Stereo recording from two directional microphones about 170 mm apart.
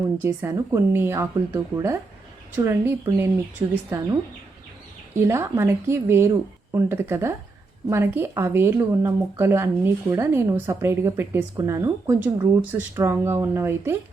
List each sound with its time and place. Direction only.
0.2 s speech: 15° right (ahead or behind)